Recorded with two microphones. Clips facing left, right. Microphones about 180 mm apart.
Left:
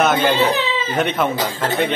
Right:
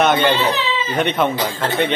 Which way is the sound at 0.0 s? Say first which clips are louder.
Even; 5° left (ahead or behind).